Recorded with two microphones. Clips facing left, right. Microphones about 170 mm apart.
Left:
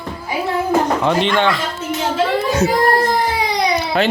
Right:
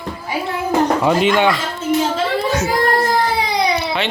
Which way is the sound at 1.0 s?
5° right (ahead or behind).